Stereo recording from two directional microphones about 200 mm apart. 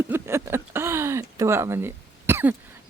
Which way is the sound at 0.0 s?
10° right (ahead or behind).